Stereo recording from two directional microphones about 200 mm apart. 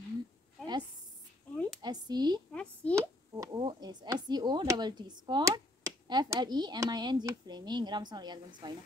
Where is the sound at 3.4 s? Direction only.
20° right (ahead or behind).